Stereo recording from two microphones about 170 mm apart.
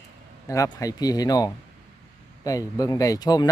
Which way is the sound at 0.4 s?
20° left (ahead or behind).